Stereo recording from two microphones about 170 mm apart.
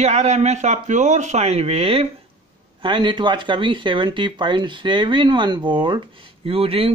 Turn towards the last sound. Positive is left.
turn(degrees=-35)  # may be behind; listen again after turning